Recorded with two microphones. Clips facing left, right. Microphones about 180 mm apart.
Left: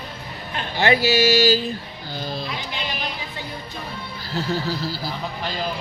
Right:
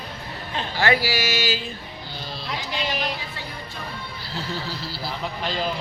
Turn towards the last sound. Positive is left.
turn(degrees=40)  # may be behind; listen again after turning